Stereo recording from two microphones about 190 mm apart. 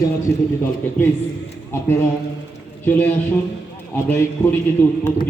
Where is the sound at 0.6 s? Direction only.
10° left (ahead or behind).